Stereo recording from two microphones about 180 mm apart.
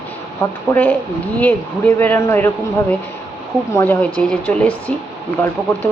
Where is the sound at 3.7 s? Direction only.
10° left (ahead or behind).